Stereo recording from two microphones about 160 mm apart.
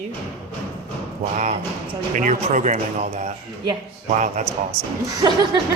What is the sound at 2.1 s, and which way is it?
Speech, 55° right (ahead or behind).